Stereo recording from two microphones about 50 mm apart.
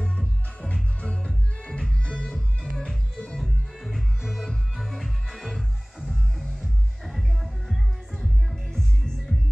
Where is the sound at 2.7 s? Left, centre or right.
Centre.